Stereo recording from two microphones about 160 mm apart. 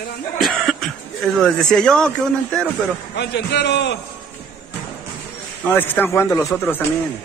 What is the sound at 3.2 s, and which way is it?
Speech, 90° left.